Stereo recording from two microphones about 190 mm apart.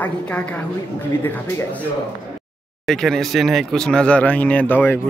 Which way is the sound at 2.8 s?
Centre (ahead or behind).